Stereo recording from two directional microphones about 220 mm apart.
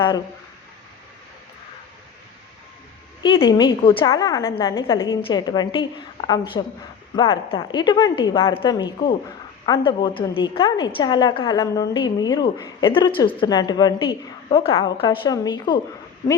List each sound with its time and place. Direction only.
3.2 s a woman's voice: 20° left (ahead or behind)